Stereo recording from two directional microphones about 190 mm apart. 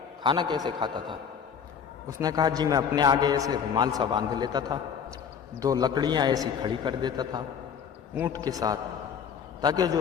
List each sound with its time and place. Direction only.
0.2 s a man's voice: 25° right (ahead or behind)